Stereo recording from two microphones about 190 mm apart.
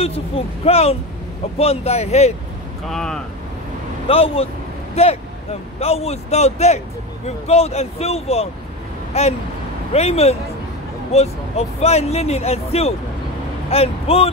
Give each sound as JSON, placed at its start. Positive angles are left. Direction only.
{"t": 0.7, "sound": "speech", "side_deg": 30}
{"t": 2.9, "sound": "speech", "side_deg": 5}
{"t": 4.1, "sound": "speech", "side_deg": 30}